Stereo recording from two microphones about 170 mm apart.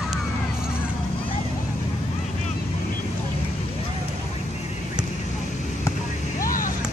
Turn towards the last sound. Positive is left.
turn(degrees=55)  # may be behind; listen again after turning